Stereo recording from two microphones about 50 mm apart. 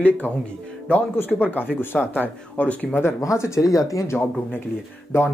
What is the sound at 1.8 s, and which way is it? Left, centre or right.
Speech, left.